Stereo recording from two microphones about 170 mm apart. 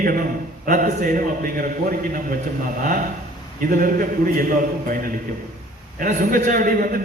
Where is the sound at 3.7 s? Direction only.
55° right (ahead or behind).